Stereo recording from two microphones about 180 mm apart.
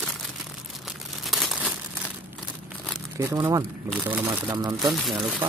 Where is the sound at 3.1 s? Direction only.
15° right (ahead or behind).